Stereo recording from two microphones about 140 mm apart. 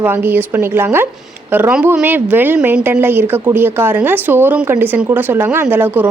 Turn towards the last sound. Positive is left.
turn(degrees=-15)  # may be behind; listen again after turning